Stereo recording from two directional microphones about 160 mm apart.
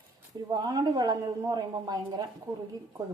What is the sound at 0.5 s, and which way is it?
Speech, 25° right (ahead or behind).